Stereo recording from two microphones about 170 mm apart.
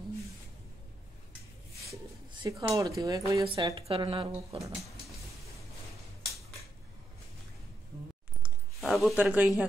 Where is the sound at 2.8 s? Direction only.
20° right (ahead or behind).